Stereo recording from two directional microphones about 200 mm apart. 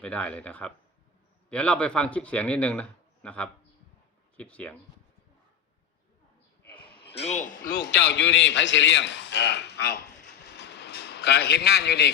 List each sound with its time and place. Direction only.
0.0 s a man's voice: 5° left (ahead or behind)
7.1 s a man's voice: 30° left (ahead or behind)
8.0 s a man's voice: 60° left (ahead or behind)
10.4 s a sound: 55° left (ahead or behind)